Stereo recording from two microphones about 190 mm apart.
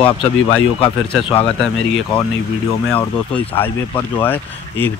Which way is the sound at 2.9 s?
5° left (ahead or behind).